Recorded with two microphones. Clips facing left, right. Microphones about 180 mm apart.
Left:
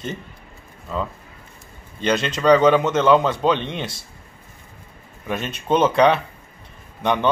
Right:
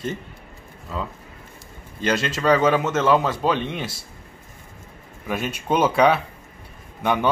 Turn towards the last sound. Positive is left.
turn(degrees=-5)  # may be behind; listen again after turning